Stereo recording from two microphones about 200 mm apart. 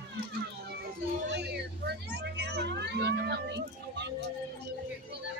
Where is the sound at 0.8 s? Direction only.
55° right (ahead or behind).